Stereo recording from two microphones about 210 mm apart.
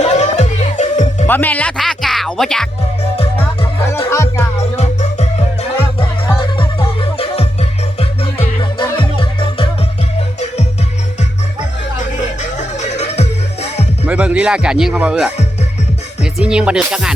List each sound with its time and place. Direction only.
0.0 s music: 35° left (ahead or behind)
1.3 s speech: 10° left (ahead or behind)
4.1 s music: 15° left (ahead or behind)
4.5 s music: 30° left (ahead or behind)
6.0 s music: 25° left (ahead or behind)
11.9 s music: 35° left (ahead or behind)
14.1 s speech: 5° right (ahead or behind)